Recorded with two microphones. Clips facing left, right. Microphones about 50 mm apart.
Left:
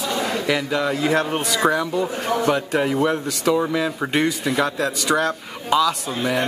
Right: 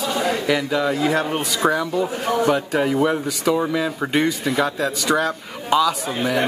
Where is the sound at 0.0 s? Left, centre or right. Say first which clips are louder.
Right 2 dB; centre.